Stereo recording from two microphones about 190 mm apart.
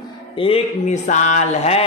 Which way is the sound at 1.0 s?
40° left (ahead or behind).